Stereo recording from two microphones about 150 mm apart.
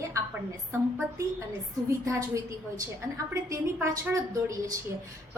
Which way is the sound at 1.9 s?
20° right (ahead or behind).